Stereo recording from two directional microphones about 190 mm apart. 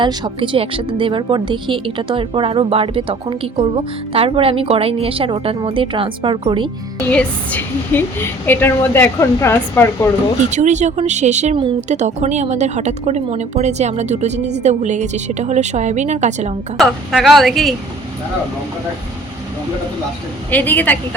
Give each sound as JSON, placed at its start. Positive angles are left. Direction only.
{"t": 0.0, "sound": "a woman's voice", "side_deg": -25}
{"t": 7.1, "sound": "a woman's voice", "side_deg": 5}
{"t": 10.5, "sound": "a woman's voice", "side_deg": -40}
{"t": 16.7, "sound": "a woman's voice", "side_deg": 0}
{"t": 20.5, "sound": "a woman's voice", "side_deg": 10}